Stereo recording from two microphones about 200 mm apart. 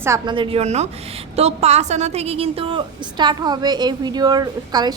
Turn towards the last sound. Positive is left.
turn(degrees=-20)  # may be behind; listen again after turning